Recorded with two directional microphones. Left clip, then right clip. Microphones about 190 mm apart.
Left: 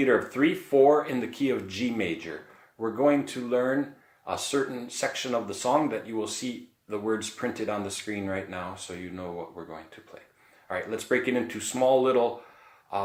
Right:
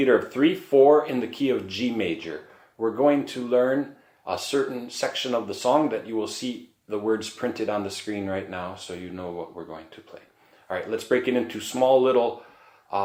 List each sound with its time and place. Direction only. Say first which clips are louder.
0.0 s speech: right 3 dB; 15° left (ahead or behind)